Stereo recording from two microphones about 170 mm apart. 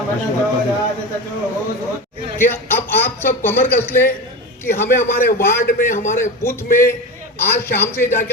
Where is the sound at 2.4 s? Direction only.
15° left (ahead or behind).